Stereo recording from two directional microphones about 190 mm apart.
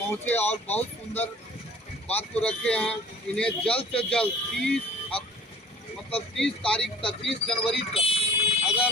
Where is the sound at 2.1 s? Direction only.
5° left (ahead or behind).